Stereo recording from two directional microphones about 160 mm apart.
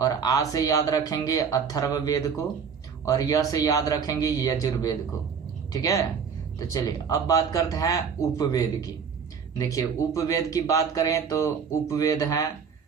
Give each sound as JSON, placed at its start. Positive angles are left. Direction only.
{"t": 0.0, "sound": "speech", "side_deg": 25}